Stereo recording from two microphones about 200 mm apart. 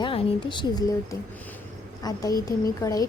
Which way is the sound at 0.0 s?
25° left (ahead or behind).